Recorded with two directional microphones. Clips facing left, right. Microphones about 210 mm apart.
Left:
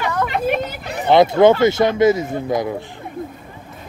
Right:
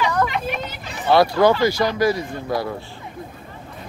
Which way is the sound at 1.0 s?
20° left (ahead or behind).